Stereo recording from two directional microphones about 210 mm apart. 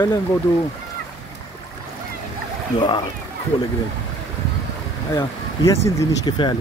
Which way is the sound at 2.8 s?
20° left (ahead or behind).